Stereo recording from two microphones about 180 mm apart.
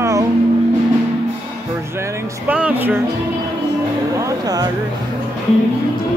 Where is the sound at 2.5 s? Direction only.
10° right (ahead or behind).